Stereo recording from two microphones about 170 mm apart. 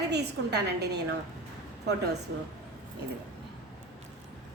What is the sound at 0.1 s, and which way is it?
Speech, 80° right.